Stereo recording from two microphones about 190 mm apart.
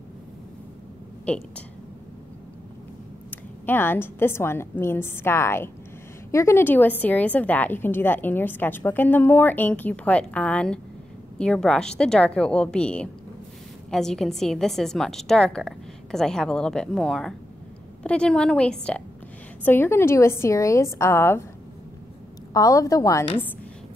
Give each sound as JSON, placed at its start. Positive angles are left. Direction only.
{"t": 1.3, "sound": "a woman's voice", "side_deg": 5}
{"t": 3.3, "sound": "a woman's voice", "side_deg": 10}
{"t": 22.5, "sound": "a woman's voice", "side_deg": 20}